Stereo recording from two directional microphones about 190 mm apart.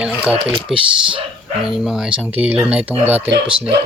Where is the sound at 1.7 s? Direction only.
Centre (ahead or behind).